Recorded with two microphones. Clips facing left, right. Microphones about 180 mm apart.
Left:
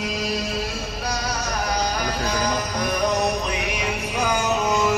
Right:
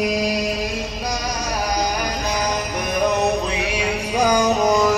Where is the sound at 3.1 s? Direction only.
25° right (ahead or behind).